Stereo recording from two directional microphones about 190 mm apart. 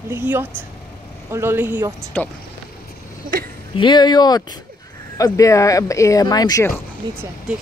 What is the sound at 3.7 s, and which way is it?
Speech, 25° left (ahead or behind).